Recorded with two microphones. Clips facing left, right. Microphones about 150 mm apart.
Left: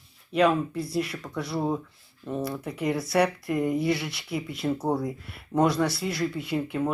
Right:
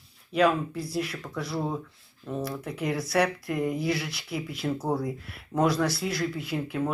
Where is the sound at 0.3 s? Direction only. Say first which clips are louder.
Left 1 dB; centre (ahead or behind).